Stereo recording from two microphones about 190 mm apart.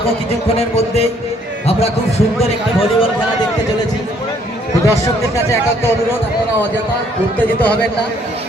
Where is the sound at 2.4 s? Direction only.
30° left (ahead or behind).